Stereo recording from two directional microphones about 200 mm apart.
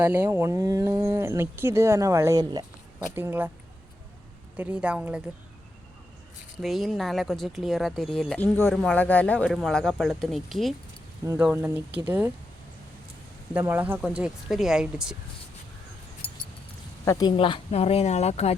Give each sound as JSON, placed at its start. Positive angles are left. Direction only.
{"t": 0.0, "sound": "speech", "side_deg": -10}
{"t": 4.5, "sound": "speech", "side_deg": -5}
{"t": 6.6, "sound": "speech", "side_deg": 0}
{"t": 13.5, "sound": "speech", "side_deg": -10}
{"t": 16.2, "sound": "vehicle", "side_deg": 25}
{"t": 17.1, "sound": "speech", "side_deg": 20}